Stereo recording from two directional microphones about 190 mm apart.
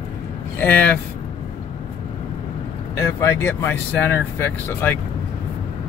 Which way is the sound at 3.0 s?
15° left (ahead or behind).